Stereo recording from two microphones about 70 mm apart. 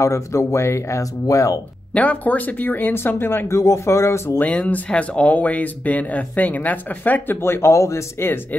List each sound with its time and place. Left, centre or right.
0.0 s speech: left
1.2 s speech: left
2.0 s speech: left
4.4 s speech: left